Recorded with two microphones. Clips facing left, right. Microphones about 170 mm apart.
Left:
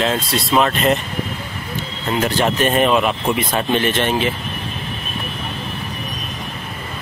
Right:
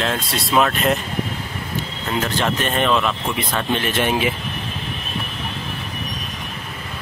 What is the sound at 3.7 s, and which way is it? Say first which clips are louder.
Speech: left 2 dB; 5° right (ahead or behind).